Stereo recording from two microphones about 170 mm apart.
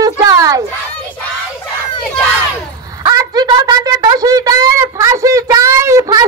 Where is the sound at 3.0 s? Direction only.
25° right (ahead or behind).